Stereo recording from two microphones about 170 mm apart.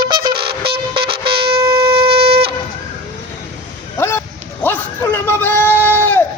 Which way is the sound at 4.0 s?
15° left (ahead or behind).